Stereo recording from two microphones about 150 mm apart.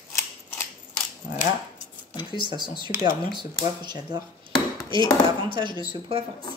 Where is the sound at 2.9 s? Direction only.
20° right (ahead or behind).